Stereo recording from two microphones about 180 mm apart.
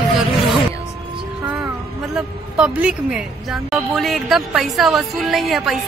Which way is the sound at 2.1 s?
5° right (ahead or behind).